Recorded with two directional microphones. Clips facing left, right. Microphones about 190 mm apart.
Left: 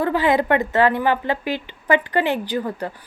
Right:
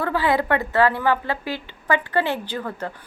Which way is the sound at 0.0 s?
20° left (ahead or behind).